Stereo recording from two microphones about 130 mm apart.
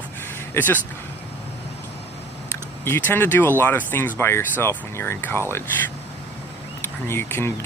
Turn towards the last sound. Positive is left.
turn(degrees=15)  # may be behind; listen again after turning